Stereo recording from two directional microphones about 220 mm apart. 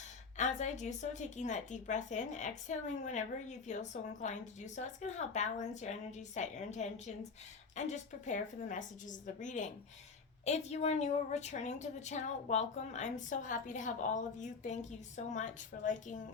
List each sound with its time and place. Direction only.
0.3 s a woman's voice: 35° left (ahead or behind)